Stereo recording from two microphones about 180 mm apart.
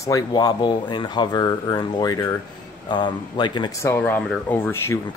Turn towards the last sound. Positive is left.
turn(degrees=15)  # may be behind; listen again after turning